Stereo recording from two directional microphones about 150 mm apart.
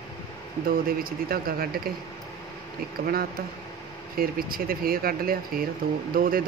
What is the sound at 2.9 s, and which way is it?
Speech, 80° right.